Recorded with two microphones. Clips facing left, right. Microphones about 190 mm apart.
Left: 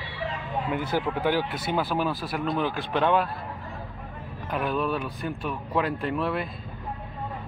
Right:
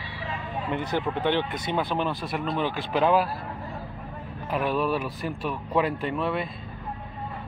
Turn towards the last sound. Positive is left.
turn(degrees=0)  # may be behind; listen again after turning